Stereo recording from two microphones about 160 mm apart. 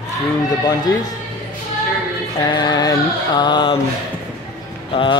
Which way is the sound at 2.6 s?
25° left (ahead or behind).